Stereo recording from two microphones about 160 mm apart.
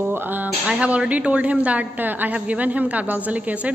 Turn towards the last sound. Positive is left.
turn(degrees=-10)  # may be behind; listen again after turning